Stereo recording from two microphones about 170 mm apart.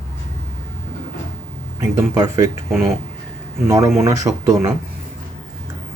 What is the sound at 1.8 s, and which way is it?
Speech, 20° right (ahead or behind).